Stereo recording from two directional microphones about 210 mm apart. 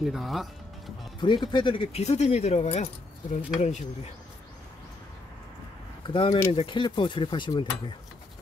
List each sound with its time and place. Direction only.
0.0 s speech: centre (ahead or behind)
1.2 s speech: 20° left (ahead or behind)
6.0 s speech: 25° left (ahead or behind)